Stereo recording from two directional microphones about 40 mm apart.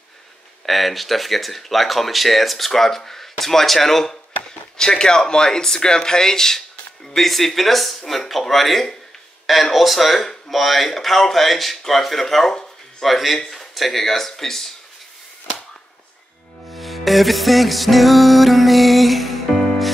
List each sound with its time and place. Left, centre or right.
0.7 s speech: centre
13.4 s speech: centre
16.7 s music: centre